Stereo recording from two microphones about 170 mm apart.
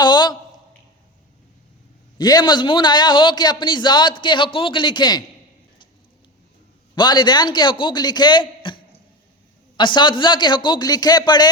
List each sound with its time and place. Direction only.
0.0 s a sound: 25° left (ahead or behind)
2.1 s a man's voice: 25° left (ahead or behind)
6.9 s a man's voice: 25° left (ahead or behind)